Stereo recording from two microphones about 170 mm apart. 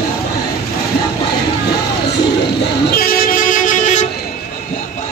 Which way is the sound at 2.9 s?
60° left (ahead or behind).